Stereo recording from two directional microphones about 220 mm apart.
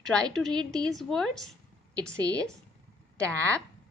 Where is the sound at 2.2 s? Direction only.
15° right (ahead or behind).